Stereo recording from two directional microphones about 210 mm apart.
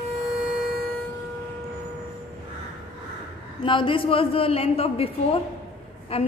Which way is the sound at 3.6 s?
25° left (ahead or behind).